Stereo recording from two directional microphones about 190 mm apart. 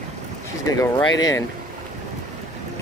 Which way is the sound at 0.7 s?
20° left (ahead or behind).